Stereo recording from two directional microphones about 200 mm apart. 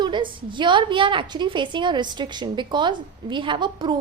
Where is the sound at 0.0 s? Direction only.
25° right (ahead or behind).